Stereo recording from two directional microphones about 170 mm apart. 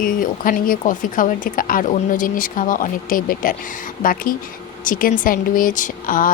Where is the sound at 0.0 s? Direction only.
55° left (ahead or behind).